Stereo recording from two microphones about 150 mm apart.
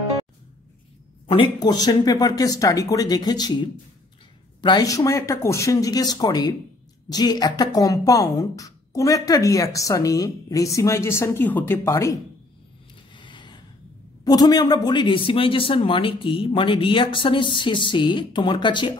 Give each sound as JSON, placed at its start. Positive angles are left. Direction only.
{"t": 1.2, "sound": "speech", "side_deg": 35}
{"t": 4.6, "sound": "speech", "side_deg": 30}
{"t": 13.1, "sound": "a sound", "side_deg": 30}
{"t": 14.2, "sound": "speech", "side_deg": 25}